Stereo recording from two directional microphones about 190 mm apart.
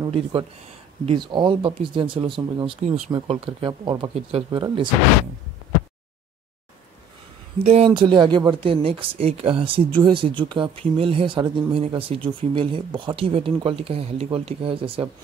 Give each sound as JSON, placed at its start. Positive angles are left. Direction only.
{"t": 0.0, "sound": "speech", "side_deg": -30}
{"t": 7.5, "sound": "speech", "side_deg": -30}